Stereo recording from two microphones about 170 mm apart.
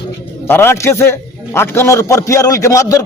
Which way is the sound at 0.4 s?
15° left (ahead or behind).